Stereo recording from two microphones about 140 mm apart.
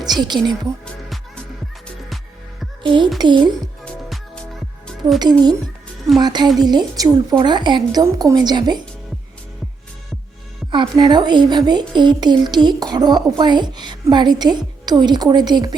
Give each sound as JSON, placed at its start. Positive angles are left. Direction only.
{"t": 0.0, "sound": "music", "side_deg": -30}
{"t": 2.8, "sound": "speech", "side_deg": -35}
{"t": 4.9, "sound": "music", "side_deg": 0}
{"t": 6.1, "sound": "a woman's voice", "side_deg": -30}
{"t": 10.7, "sound": "speech", "side_deg": -35}